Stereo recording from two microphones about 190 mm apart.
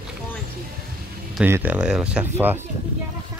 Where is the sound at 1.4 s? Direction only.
10° right (ahead or behind).